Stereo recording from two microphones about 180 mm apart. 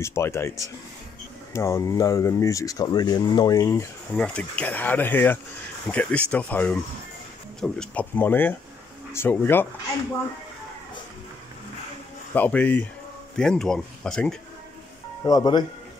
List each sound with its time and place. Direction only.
0.0 s speech: 15° left (ahead or behind)
4.1 s speech: 5° left (ahead or behind)
12.4 s speech: 10° left (ahead or behind)
15.2 s speech: 20° left (ahead or behind)